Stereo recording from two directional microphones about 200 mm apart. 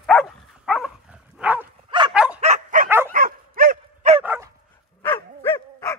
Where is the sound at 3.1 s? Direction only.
45° right (ahead or behind).